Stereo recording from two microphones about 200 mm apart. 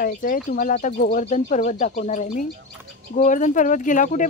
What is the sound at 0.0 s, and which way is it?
Speech, 45° left (ahead or behind).